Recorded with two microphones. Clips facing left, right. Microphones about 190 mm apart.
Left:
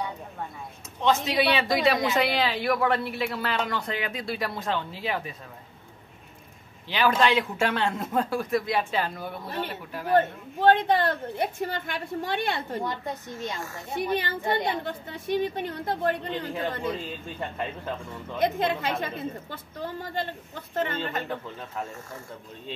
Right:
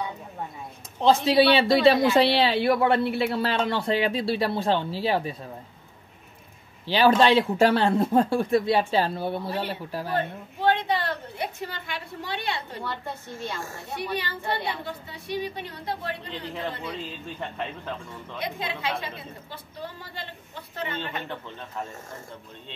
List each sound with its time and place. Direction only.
1.0 s a man's voice: 30° right (ahead or behind)
6.9 s a man's voice: 35° right (ahead or behind)
10.6 s a woman's voice: 50° left (ahead or behind)
12.8 s a woman's voice: 15° left (ahead or behind)
13.9 s a woman's voice: 45° left (ahead or behind)
18.4 s a woman's voice: 50° left (ahead or behind)